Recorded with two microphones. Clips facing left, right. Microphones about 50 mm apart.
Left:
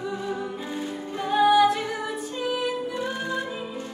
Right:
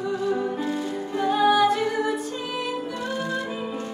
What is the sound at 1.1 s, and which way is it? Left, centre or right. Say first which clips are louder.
Music: left 1 dB; centre.